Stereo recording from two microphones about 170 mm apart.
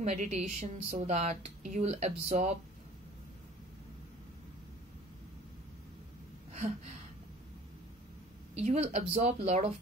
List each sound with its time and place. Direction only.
0.0 s a woman's voice: 40° right (ahead or behind)
8.5 s speech: 40° right (ahead or behind)